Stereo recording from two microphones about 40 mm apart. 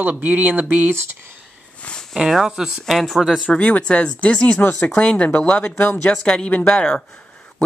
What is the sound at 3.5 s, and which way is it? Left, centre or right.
Speech, left.